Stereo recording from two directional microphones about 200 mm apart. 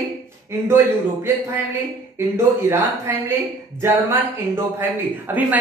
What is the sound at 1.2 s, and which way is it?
Speech, 10° right (ahead or behind).